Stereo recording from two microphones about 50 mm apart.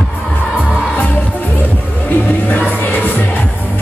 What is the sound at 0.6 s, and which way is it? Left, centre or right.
Music, left.